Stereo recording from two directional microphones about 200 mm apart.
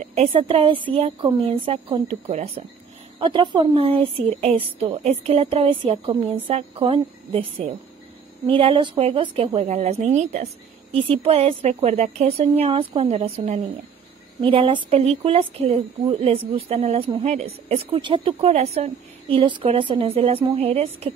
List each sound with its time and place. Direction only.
0.0 s a woman's voice: 30° right (ahead or behind)